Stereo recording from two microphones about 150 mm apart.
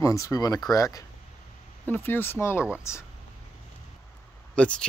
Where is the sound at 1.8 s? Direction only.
15° left (ahead or behind).